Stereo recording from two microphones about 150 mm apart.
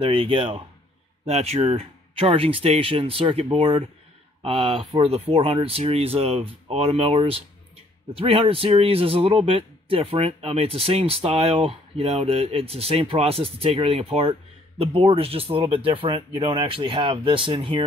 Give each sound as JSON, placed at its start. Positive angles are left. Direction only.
{"t": 0.0, "sound": "speech", "side_deg": -35}